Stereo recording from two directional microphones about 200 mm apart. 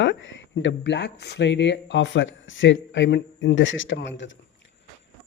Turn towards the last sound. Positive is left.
turn(degrees=65)  # may be behind; listen again after turning